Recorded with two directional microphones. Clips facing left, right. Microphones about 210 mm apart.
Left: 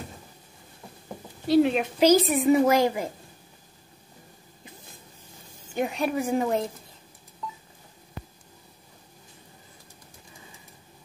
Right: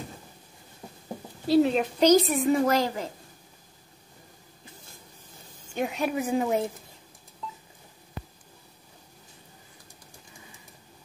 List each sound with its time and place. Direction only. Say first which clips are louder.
1.5 s a woman's voice: left 1 dB; 5° left (ahead or behind)
5.8 s speech: left 1 dB; centre (ahead or behind)